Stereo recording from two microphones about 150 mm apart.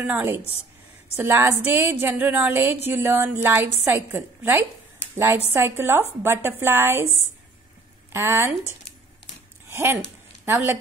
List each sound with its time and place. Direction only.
0.0 s a woman's voice: 15° right (ahead or behind)
8.1 s a woman's voice: 15° right (ahead or behind)
9.7 s a sound: 15° right (ahead or behind)
10.4 s a woman's voice: 15° right (ahead or behind)